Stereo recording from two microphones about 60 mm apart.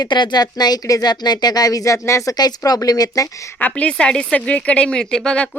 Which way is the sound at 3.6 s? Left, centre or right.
Left.